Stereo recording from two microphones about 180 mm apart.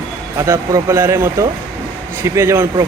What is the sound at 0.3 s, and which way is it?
Speech, 15° right (ahead or behind).